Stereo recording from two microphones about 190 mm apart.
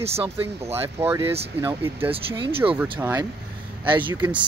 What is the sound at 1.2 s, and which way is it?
Speech, 30° right (ahead or behind).